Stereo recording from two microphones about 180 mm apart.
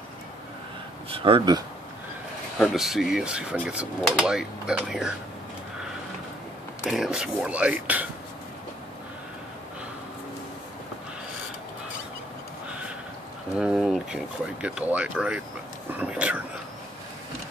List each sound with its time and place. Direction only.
1.2 s speech: 25° right (ahead or behind)
2.6 s speech: centre (ahead or behind)
6.8 s a man's voice: 5° right (ahead or behind)
13.6 s a man's voice: 5° right (ahead or behind)